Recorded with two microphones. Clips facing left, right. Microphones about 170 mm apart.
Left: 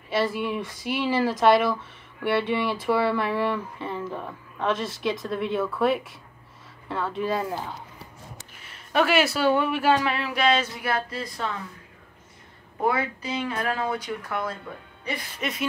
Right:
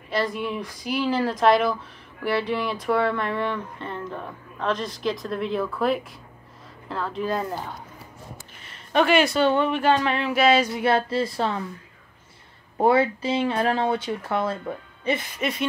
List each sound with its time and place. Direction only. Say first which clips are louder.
0.1 s speech: left 1 dB; 5° left (ahead or behind)
10.8 s speech: right 7 dB; 30° right (ahead or behind)
12.8 s speech: right 6 dB; 30° right (ahead or behind)